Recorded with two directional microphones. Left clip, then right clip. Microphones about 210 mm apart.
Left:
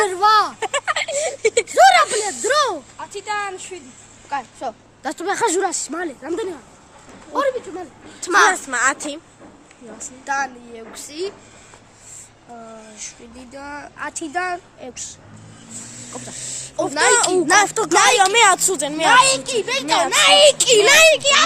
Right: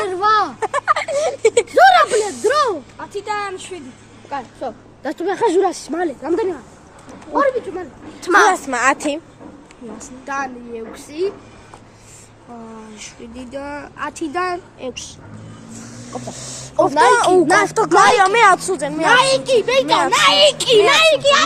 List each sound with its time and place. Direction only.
0.0 s a sound: 50° left (ahead or behind)
0.6 s a sound: 15° left (ahead or behind)
1.7 s a sound: 25° left (ahead or behind)
2.5 s speech: 45° left (ahead or behind)
3.2 s a woman's voice: 5° left (ahead or behind)
4.3 s speech: 35° left (ahead or behind)
5.8 s a woman's voice: 20° left (ahead or behind)
6.2 s speech: centre (ahead or behind)
10.2 s a woman's voice: 20° left (ahead or behind)
13.0 s speech: centre (ahead or behind)
13.8 s a woman's voice: 15° left (ahead or behind); by 21.2 s 40° left (ahead or behind)
21.2 s speech: 20° left (ahead or behind)